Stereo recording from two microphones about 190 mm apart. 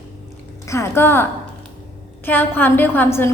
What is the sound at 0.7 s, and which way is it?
A woman's voice, 15° left (ahead or behind).